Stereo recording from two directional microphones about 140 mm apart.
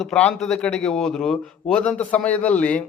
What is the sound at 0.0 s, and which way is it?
A man's voice, 5° left (ahead or behind).